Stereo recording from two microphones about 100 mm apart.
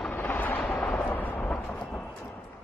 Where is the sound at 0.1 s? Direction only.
20° left (ahead or behind).